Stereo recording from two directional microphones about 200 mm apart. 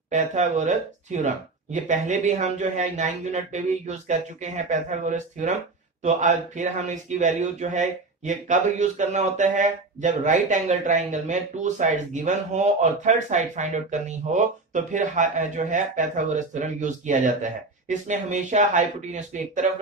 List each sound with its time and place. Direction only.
0.1 s speech: 35° right (ahead or behind)